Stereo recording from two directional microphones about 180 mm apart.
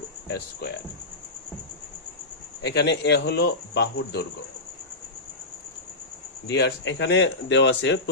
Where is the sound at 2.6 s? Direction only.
70° left (ahead or behind).